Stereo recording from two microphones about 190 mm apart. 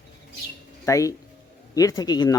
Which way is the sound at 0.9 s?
15° left (ahead or behind).